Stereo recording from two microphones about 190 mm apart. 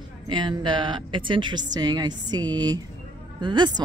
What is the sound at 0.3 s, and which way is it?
A woman's voice, 25° right (ahead or behind).